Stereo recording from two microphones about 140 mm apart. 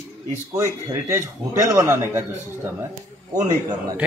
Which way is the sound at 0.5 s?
20° right (ahead or behind).